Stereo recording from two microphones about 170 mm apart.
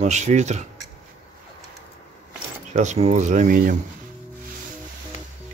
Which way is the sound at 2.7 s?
45° right (ahead or behind).